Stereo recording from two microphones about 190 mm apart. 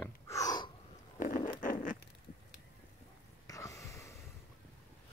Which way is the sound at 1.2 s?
40° left (ahead or behind).